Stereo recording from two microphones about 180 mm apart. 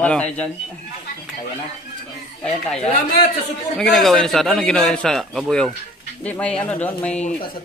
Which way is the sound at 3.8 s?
Centre (ahead or behind).